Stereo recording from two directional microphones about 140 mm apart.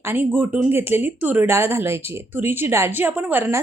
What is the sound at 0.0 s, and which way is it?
Speech, 15° right (ahead or behind).